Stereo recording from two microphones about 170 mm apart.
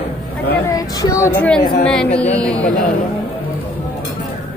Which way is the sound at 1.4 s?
5° left (ahead or behind).